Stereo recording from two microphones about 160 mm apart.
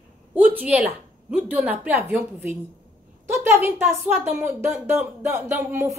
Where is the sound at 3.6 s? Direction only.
10° right (ahead or behind).